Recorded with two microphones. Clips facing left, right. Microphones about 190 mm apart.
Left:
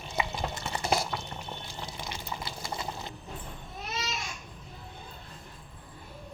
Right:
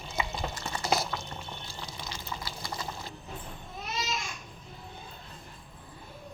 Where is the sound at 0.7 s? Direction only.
25° left (ahead or behind).